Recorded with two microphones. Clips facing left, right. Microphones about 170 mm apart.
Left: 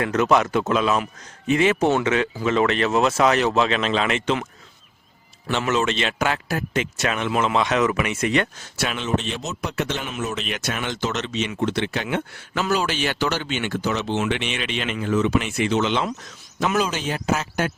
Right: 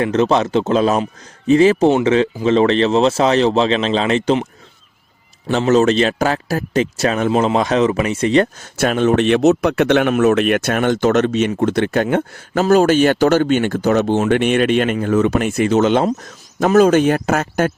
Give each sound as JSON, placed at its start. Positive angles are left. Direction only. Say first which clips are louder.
{"t": 0.0, "sound": "a man's voice", "louder": "right 4 dB", "side_deg": -30}
{"t": 5.5, "sound": "a man's voice", "louder": "right 9 dB", "side_deg": -40}
{"t": 8.8, "sound": "speech", "louder": "right 10 dB", "side_deg": -50}